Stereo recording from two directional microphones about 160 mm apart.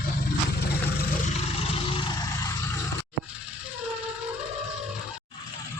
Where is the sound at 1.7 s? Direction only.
35° left (ahead or behind).